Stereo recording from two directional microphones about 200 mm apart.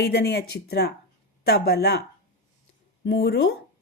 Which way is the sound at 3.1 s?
55° left (ahead or behind).